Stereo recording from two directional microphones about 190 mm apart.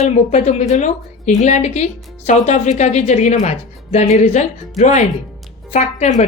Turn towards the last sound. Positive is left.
turn(degrees=40)  # may be behind; listen again after turning